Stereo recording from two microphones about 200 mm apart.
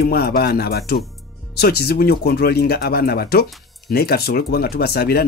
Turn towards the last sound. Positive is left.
turn(degrees=50)  # may be behind; listen again after turning